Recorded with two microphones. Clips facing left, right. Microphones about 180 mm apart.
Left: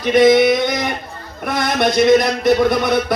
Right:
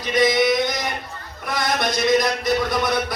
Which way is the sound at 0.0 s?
55° left (ahead or behind).